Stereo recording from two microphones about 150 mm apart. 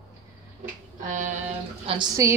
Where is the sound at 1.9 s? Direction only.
25° right (ahead or behind).